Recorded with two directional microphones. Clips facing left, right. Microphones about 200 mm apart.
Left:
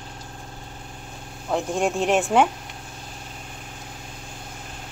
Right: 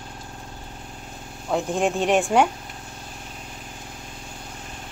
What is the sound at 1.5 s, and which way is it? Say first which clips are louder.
Speech: right 1 dB; centre (ahead or behind).